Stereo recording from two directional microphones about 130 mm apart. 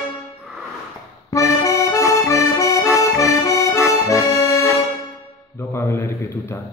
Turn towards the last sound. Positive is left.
turn(degrees=20)  # may be behind; listen again after turning